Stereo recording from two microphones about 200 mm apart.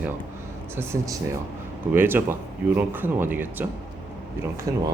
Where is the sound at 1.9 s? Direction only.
10° right (ahead or behind).